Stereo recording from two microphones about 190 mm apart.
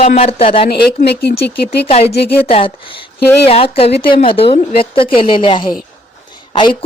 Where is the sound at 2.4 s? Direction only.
30° left (ahead or behind).